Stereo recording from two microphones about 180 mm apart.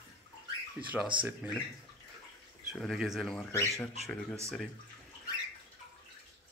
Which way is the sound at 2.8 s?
Centre (ahead or behind).